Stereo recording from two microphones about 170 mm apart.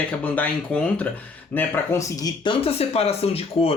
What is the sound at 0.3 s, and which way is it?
Speech, 10° left (ahead or behind).